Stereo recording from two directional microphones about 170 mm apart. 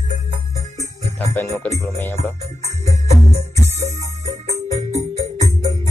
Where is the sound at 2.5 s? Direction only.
40° right (ahead or behind).